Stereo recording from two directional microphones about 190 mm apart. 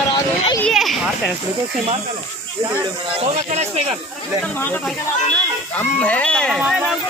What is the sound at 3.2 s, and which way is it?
Speech, 35° right (ahead or behind).